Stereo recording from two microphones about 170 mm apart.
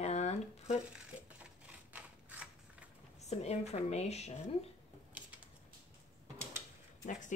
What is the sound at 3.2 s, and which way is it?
A woman's voice, 40° left (ahead or behind).